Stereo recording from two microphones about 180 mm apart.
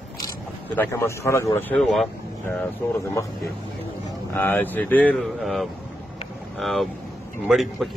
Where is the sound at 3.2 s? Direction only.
15° left (ahead or behind).